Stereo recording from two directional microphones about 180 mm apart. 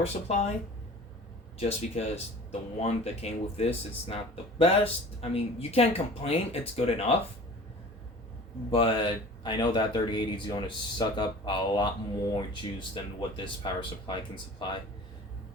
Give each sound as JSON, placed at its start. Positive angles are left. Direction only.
{"t": 0.0, "sound": "speech", "side_deg": 35}
{"t": 1.5, "sound": "speech", "side_deg": 35}
{"t": 8.7, "sound": "speech", "side_deg": 30}
{"t": 12.9, "sound": "speech", "side_deg": 30}